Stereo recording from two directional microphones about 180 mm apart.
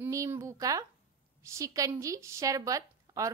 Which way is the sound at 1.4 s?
15° right (ahead or behind).